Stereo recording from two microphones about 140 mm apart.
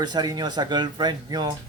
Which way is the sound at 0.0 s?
30° right (ahead or behind).